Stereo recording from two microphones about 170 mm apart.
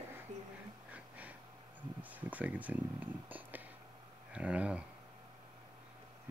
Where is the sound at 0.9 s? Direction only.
10° right (ahead or behind).